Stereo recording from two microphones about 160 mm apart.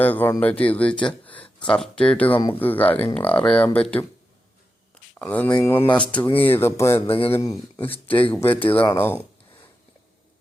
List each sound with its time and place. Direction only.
0.0 s speech: 10° left (ahead or behind)
5.2 s speech: 10° left (ahead or behind)
7.8 s speech: 35° left (ahead or behind)
8.0 s speech: 10° left (ahead or behind)